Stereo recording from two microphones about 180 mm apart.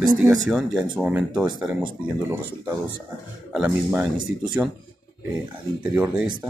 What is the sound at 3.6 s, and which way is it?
Speech, 10° right (ahead or behind).